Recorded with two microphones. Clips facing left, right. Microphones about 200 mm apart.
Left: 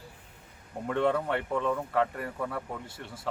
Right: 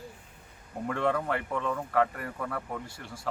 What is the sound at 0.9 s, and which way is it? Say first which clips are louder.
Speech: left 2 dB; centre (ahead or behind).